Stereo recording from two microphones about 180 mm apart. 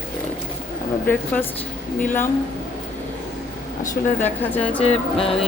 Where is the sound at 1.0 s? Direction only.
10° left (ahead or behind).